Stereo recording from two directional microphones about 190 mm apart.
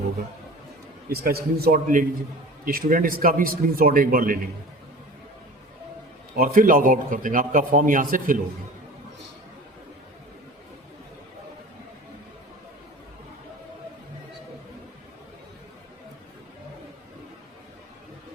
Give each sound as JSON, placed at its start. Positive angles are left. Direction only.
{"t": 1.1, "sound": "a man's voice", "side_deg": -55}
{"t": 6.3, "sound": "a man's voice", "side_deg": -50}